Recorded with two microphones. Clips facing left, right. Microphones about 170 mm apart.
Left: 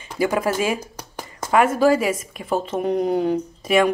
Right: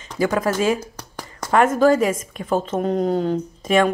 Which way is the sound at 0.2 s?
10° left (ahead or behind).